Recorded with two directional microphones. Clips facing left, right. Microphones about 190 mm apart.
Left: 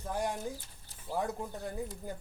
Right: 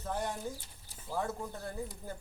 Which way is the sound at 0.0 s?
10° left (ahead or behind).